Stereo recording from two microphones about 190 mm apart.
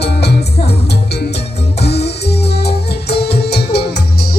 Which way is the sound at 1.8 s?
60° left (ahead or behind).